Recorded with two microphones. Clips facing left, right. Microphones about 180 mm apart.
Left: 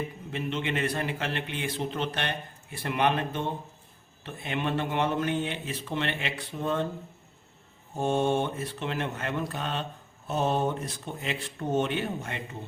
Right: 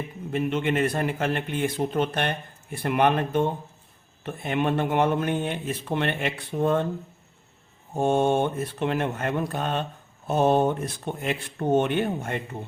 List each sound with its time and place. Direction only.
0.3 s speech: 50° right (ahead or behind)
7.9 s speech: 50° right (ahead or behind)